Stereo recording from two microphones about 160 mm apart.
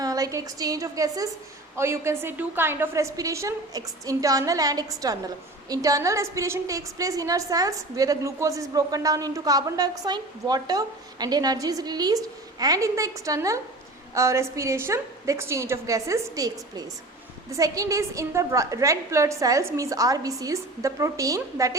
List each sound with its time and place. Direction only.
0.0 s a woman's voice: 20° right (ahead or behind)